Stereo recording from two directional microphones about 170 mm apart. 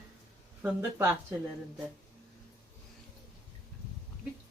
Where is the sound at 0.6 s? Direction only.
15° right (ahead or behind).